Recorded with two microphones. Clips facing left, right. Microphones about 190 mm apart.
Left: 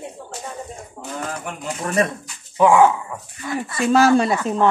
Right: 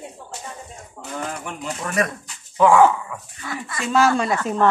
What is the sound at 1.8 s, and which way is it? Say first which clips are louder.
Speech: left 3 dB; 35° left (ahead or behind).